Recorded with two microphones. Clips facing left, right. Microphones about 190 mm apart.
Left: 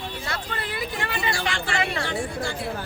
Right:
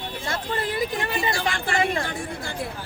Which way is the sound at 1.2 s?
45° right (ahead or behind).